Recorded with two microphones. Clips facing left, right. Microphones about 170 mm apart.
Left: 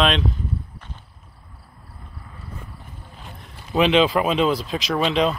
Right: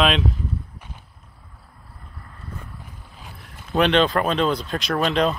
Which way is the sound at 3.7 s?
Centre (ahead or behind).